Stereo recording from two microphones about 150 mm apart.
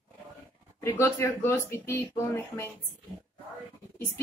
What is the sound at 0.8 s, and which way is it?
A woman's voice, 20° left (ahead or behind).